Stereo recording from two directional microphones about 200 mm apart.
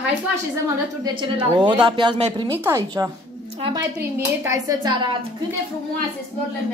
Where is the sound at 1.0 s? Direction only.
25° right (ahead or behind).